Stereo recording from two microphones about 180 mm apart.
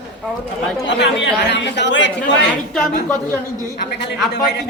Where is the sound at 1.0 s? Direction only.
75° left (ahead or behind).